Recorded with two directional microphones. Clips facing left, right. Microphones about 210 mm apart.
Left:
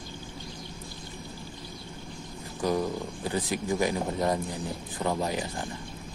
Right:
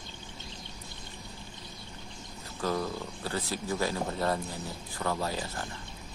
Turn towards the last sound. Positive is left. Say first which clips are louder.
# left 4 dB
turn(degrees=20)  # may be behind; listen again after turning